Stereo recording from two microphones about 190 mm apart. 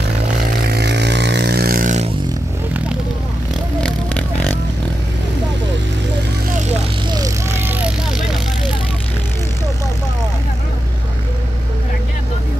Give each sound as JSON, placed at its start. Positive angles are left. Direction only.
{"t": 0.7, "sound": "vehicle", "side_deg": -60}
{"t": 3.8, "sound": "music", "side_deg": 5}
{"t": 7.1, "sound": "vehicle", "side_deg": -15}